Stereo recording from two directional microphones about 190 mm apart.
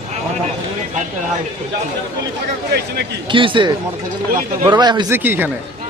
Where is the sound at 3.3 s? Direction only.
25° right (ahead or behind).